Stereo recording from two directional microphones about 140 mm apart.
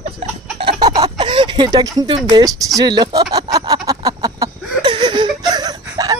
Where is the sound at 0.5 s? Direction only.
35° right (ahead or behind).